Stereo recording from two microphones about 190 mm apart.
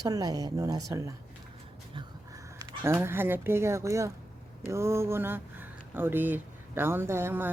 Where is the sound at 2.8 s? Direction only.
15° right (ahead or behind).